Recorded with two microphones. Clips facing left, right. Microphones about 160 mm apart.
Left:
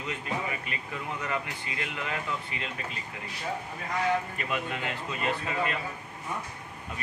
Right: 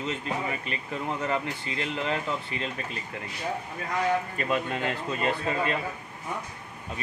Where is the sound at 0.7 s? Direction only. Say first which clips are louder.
Right 4 dB; 30° right (ahead or behind).